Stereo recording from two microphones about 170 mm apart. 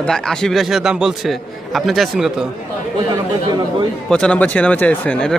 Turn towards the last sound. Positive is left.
turn(degrees=5)  # may be behind; listen again after turning